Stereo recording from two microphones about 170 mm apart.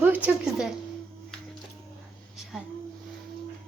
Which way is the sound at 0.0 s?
10° right (ahead or behind).